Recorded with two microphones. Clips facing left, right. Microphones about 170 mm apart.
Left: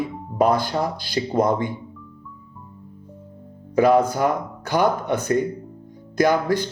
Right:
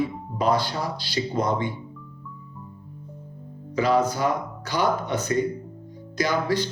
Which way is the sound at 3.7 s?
55° left (ahead or behind).